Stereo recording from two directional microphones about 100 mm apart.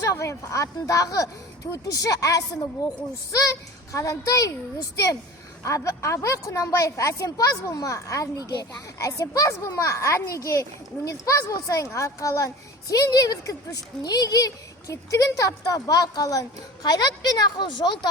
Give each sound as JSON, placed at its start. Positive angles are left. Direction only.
{"t": 0.0, "sound": "a woman's voice", "side_deg": 30}
{"t": 3.9, "sound": "a woman's voice", "side_deg": 30}